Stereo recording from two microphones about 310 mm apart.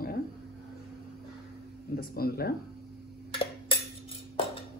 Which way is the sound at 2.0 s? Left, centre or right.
Left.